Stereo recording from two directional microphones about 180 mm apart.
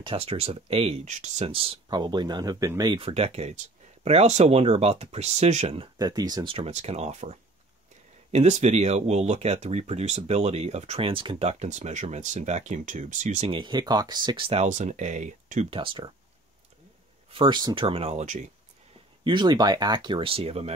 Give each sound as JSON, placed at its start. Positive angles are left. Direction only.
{"t": 0.0, "sound": "speech", "side_deg": -35}
{"t": 5.9, "sound": "speech", "side_deg": -20}
{"t": 13.5, "sound": "speech", "side_deg": -25}
{"t": 15.7, "sound": "speech", "side_deg": -30}
{"t": 17.3, "sound": "speech", "side_deg": -25}
{"t": 19.2, "sound": "speech", "side_deg": -25}